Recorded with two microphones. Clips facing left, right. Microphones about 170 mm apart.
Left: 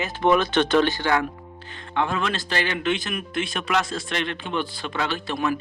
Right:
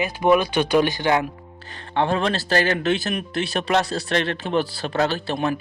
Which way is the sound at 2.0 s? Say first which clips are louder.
Right 4 dB; 35° right (ahead or behind).